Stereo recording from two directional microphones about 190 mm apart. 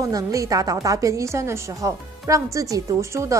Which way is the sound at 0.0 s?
15° right (ahead or behind).